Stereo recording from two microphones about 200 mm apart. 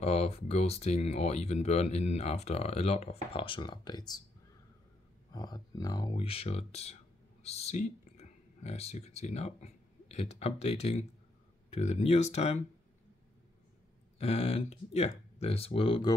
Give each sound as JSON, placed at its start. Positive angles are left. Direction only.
{"t": 0.0, "sound": "speech", "side_deg": 30}
{"t": 5.3, "sound": "speech", "side_deg": 20}
{"t": 14.1, "sound": "speech", "side_deg": 30}